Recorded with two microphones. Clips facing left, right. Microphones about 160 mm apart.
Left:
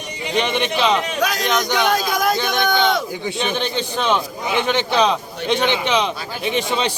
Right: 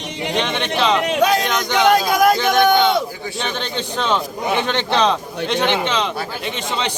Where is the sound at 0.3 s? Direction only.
10° left (ahead or behind).